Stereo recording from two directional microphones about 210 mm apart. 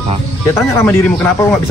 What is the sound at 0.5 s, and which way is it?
Speech, 10° left (ahead or behind).